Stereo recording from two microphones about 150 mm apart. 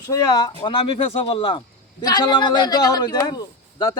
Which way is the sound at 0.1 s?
25° left (ahead or behind).